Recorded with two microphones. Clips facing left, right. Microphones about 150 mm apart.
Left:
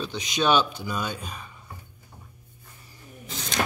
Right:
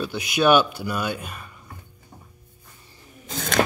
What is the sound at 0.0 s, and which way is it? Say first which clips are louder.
Speech: right 5 dB; 5° right (ahead or behind).